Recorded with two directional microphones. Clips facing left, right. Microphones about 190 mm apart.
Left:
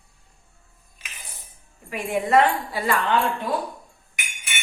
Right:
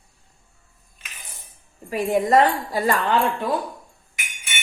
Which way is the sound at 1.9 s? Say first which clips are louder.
Right 2 dB; 35° right (ahead or behind).